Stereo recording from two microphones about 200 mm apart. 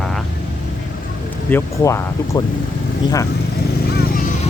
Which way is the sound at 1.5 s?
15° left (ahead or behind).